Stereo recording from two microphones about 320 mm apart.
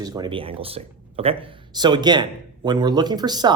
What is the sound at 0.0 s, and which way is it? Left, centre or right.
Speech, centre.